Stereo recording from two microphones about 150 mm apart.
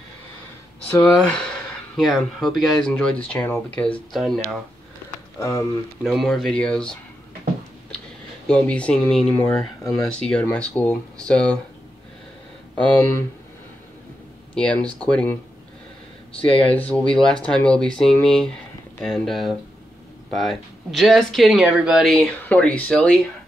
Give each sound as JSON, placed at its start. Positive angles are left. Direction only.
{"t": 1.0, "sound": "speech", "side_deg": 5}
{"t": 5.4, "sound": "speech", "side_deg": 20}
{"t": 6.0, "sound": "speech", "side_deg": 0}
{"t": 8.5, "sound": "speech", "side_deg": 10}
{"t": 12.7, "sound": "speech", "side_deg": 10}
{"t": 14.5, "sound": "speech", "side_deg": 5}
{"t": 16.6, "sound": "speech", "side_deg": 10}